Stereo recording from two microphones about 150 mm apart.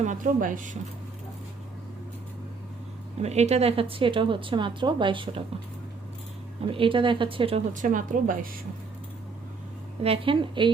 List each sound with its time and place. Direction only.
0.0 s speech: 60° right (ahead or behind)
3.2 s a woman's voice: 45° right (ahead or behind)
6.7 s a woman's voice: 35° right (ahead or behind)
7.7 s speech: 60° right (ahead or behind)
10.0 s a woman's voice: 40° right (ahead or behind)